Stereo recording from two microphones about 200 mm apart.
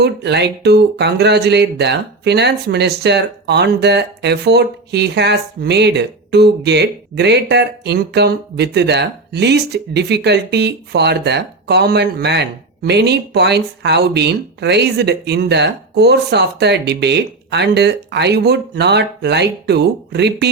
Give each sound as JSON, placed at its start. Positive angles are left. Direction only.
{"t": 0.0, "sound": "speech", "side_deg": -55}